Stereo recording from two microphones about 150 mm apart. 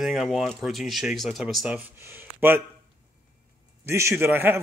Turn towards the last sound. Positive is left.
turn(degrees=-15)  # may be behind; listen again after turning